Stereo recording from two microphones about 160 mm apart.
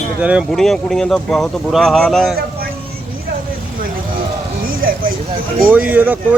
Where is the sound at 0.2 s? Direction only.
10° right (ahead or behind).